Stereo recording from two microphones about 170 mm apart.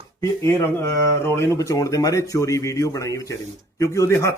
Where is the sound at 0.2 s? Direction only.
15° left (ahead or behind).